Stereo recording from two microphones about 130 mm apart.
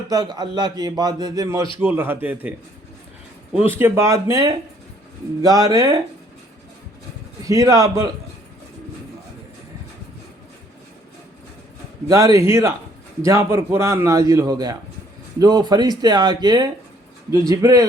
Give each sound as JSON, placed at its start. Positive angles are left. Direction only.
{"t": 0.1, "sound": "a man's voice", "side_deg": -30}
{"t": 1.8, "sound": "a man's voice", "side_deg": -15}
{"t": 7.4, "sound": "a man's voice", "side_deg": -25}
{"t": 12.0, "sound": "a man's voice", "side_deg": -25}